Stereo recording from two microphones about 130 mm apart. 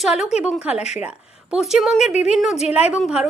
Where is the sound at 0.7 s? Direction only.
55° left (ahead or behind).